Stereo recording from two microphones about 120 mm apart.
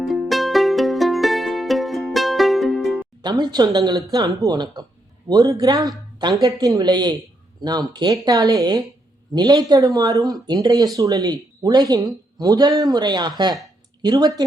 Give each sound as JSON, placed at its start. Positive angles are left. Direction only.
{"t": 0.0, "sound": "music", "side_deg": 0}
{"t": 3.2, "sound": "speech", "side_deg": -35}